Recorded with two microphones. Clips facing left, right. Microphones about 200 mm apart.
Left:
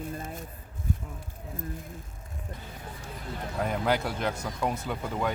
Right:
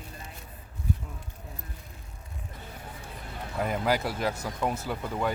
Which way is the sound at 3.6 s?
5° right (ahead or behind).